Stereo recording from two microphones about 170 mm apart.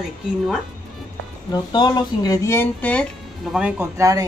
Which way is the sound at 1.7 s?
25° left (ahead or behind).